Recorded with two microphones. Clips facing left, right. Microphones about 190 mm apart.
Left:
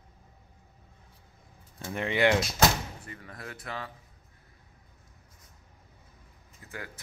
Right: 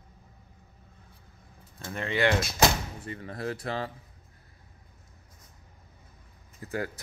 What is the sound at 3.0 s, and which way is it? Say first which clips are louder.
Speech: right 9 dB; 30° right (ahead or behind).